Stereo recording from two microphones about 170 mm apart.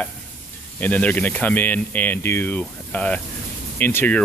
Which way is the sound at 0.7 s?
10° left (ahead or behind).